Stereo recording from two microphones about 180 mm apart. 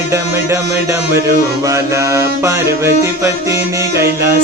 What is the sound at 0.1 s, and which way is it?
Music, 15° right (ahead or behind).